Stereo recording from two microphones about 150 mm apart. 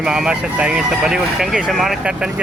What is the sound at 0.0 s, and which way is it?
Speech, 5° right (ahead or behind).